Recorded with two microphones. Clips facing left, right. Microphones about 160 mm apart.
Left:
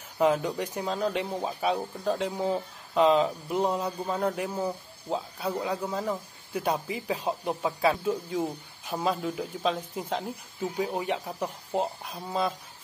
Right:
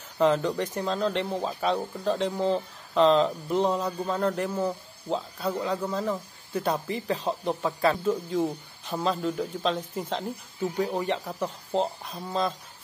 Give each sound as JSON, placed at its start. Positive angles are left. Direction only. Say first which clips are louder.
{"t": 0.2, "sound": "speech", "louder": "right 2 dB", "side_deg": 10}